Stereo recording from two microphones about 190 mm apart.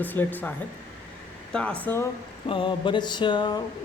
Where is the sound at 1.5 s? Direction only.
5° left (ahead or behind).